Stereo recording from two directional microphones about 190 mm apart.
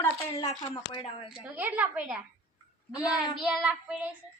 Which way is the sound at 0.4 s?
30° left (ahead or behind).